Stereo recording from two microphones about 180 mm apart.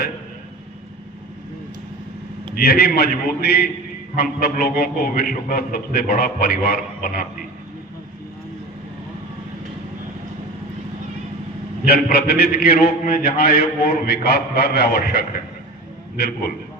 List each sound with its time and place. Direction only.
2.6 s a man's voice: 60° left (ahead or behind)
11.9 s a man's voice: 60° left (ahead or behind)